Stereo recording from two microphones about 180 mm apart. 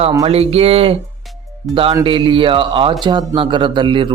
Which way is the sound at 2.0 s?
25° right (ahead or behind).